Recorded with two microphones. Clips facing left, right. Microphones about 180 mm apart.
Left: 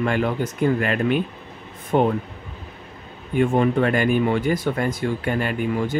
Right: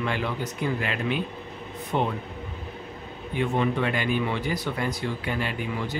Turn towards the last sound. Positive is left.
turn(degrees=50)  # may be behind; listen again after turning